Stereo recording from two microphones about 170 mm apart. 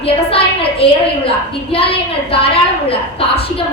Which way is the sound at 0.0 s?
35° left (ahead or behind).